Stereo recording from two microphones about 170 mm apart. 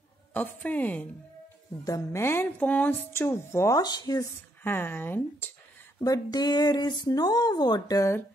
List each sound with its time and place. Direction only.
0.3 s speech: 10° left (ahead or behind)